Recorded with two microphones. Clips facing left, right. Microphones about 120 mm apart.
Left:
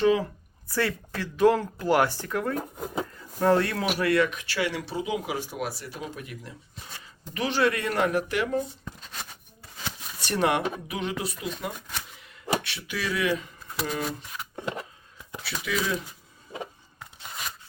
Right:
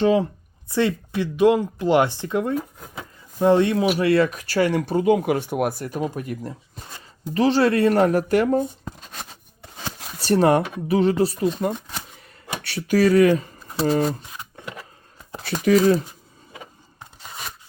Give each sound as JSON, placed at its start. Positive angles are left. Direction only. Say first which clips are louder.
{"t": 0.0, "sound": "speech", "louder": "right 4 dB", "side_deg": -30}
{"t": 7.3, "sound": "speech", "louder": "right 8 dB", "side_deg": -35}
{"t": 9.3, "sound": "a sound", "louder": "right 4 dB", "side_deg": -30}
{"t": 10.2, "sound": "speech", "louder": "right 8 dB", "side_deg": -35}
{"t": 14.5, "sound": "a sound", "louder": "left 7 dB", "side_deg": 30}
{"t": 15.3, "sound": "speech", "louder": "right 13 dB", "side_deg": -45}